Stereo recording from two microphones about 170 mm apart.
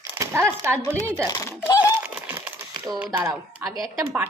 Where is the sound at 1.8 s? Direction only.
10° right (ahead or behind).